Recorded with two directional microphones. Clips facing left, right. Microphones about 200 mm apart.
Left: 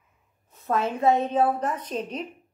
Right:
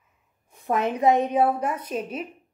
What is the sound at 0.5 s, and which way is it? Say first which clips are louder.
A woman's voice: right 1 dB; 15° right (ahead or behind).